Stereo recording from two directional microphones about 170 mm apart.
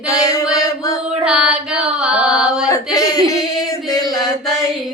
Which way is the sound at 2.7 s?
20° left (ahead or behind).